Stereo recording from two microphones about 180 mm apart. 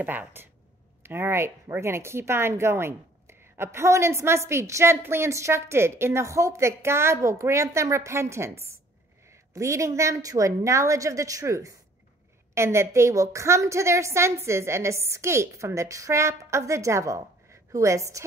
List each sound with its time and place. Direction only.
0.0 s speech: 10° right (ahead or behind)